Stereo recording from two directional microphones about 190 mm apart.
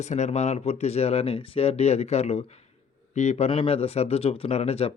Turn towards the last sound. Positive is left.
turn(degrees=35)  # may be behind; listen again after turning